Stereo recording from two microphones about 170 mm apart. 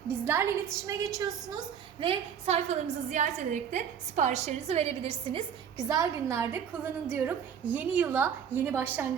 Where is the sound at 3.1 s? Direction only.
45° right (ahead or behind); by 9.0 s 10° right (ahead or behind).